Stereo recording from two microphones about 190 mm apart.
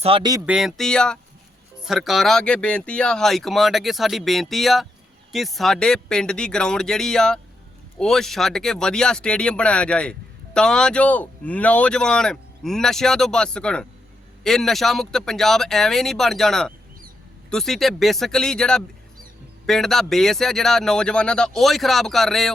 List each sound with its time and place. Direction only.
0.0 s speech: 25° right (ahead or behind)
0.4 s speech: 5° right (ahead or behind)